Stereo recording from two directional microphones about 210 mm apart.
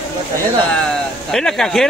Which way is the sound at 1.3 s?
Centre (ahead or behind).